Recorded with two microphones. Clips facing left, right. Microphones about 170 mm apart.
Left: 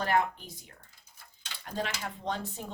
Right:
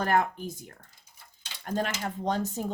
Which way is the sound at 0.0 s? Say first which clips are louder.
Right 3 dB; 45° right (ahead or behind).